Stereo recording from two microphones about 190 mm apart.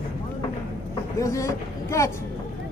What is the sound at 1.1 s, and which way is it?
Vehicle, 15° left (ahead or behind).